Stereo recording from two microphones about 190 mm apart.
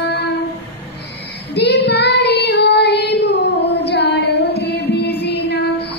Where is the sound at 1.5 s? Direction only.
60° left (ahead or behind).